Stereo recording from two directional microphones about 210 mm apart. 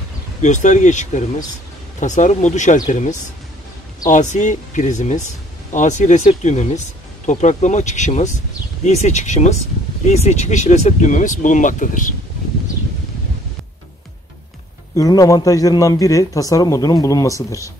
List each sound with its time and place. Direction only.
0.4 s speech: 35° left (ahead or behind)
15.0 s a man's voice: 15° left (ahead or behind)